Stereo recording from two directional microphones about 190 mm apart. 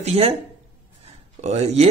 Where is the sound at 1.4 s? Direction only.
35° right (ahead or behind).